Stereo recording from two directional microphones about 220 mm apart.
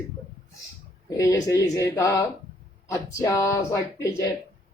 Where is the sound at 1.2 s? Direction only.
15° left (ahead or behind).